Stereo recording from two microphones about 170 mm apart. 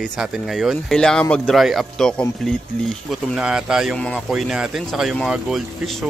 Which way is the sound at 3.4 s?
5° right (ahead or behind).